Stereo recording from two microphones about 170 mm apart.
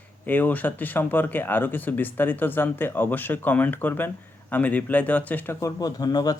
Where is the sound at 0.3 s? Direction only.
10° left (ahead or behind).